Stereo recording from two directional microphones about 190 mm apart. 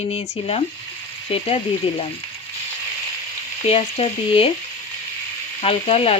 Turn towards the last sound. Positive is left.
turn(degrees=30)  # may be behind; listen again after turning